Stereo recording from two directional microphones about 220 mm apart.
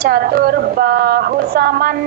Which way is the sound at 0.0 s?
45° right (ahead or behind).